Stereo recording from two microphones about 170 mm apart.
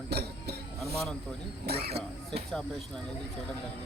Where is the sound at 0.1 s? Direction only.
70° right (ahead or behind).